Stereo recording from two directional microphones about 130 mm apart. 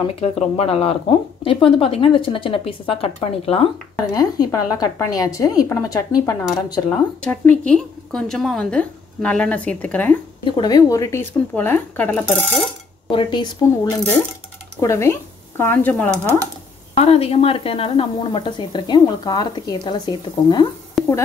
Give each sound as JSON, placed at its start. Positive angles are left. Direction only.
{"t": 0.0, "sound": "speech", "side_deg": 50}
{"t": 4.1, "sound": "a woman's voice", "side_deg": 30}
{"t": 7.2, "sound": "a woman's voice", "side_deg": 10}
{"t": 10.4, "sound": "a woman's voice", "side_deg": 35}
{"t": 13.1, "sound": "speech", "side_deg": 35}
{"t": 16.9, "sound": "speech", "side_deg": 50}
{"t": 21.0, "sound": "a sound", "side_deg": 0}